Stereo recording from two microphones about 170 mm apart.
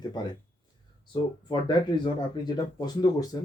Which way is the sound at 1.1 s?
25° left (ahead or behind).